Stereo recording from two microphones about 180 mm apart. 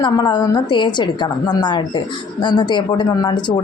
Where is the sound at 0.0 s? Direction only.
25° left (ahead or behind).